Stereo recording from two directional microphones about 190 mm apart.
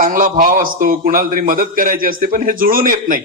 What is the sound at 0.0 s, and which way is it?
A man's voice, 45° right (ahead or behind).